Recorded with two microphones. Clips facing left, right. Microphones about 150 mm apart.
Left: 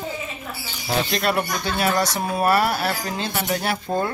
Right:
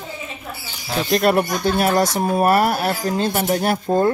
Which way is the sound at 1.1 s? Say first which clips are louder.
Right 6 dB; 45° right (ahead or behind).